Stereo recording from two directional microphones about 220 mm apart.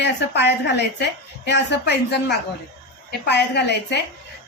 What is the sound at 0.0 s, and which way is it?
A woman's voice, 50° left (ahead or behind).